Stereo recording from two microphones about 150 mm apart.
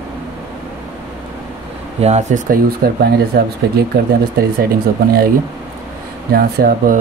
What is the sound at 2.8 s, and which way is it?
Speech, 90° right.